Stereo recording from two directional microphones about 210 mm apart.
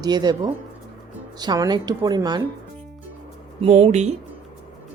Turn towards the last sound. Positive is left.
turn(degrees=-30)  # may be behind; listen again after turning